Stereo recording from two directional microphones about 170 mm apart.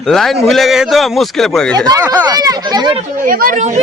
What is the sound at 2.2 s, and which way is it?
Speech, 20° right (ahead or behind).